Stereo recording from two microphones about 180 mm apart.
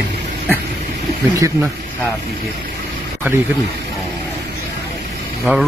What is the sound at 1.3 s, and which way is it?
Speech, 15° right (ahead or behind).